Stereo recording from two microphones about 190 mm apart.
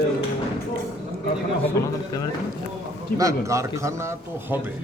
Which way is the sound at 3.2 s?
15° right (ahead or behind).